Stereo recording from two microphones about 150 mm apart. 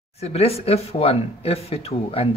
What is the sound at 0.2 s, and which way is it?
Speech, 45° left (ahead or behind).